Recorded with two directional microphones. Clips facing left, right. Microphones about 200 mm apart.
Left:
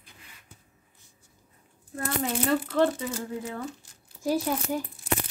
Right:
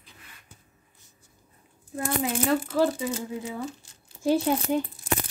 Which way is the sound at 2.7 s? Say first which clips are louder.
Even; 5° right (ahead or behind).